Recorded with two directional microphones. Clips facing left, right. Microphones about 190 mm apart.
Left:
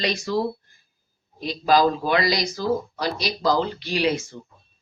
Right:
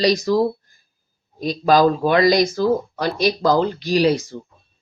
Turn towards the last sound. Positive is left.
turn(degrees=-35)  # may be behind; listen again after turning